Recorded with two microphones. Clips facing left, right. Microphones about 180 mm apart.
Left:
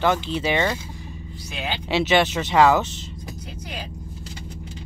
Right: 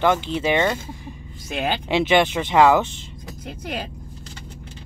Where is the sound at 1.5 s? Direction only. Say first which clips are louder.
Right 6 dB; 55° right (ahead or behind).